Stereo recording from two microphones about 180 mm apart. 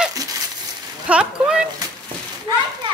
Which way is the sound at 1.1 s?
5° right (ahead or behind).